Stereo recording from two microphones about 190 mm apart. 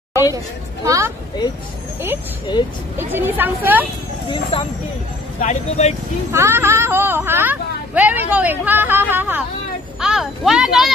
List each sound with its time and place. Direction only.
0.8 s speech: 15° right (ahead or behind)
3.0 s speech: 10° right (ahead or behind)
4.3 s speech: 30° left (ahead or behind)
6.3 s speech: 15° right (ahead or behind)